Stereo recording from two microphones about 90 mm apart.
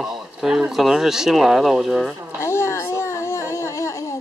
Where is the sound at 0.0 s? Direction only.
5° right (ahead or behind).